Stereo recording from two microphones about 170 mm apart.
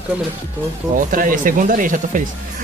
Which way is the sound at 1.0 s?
55° right (ahead or behind).